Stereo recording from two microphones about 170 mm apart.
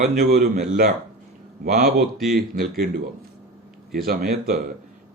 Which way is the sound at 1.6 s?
45° right (ahead or behind).